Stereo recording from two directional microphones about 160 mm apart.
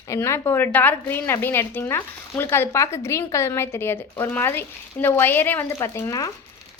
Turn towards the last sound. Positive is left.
turn(degrees=20)  # may be behind; listen again after turning